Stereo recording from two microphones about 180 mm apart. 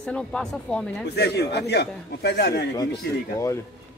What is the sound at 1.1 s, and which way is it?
Speech, 65° left (ahead or behind).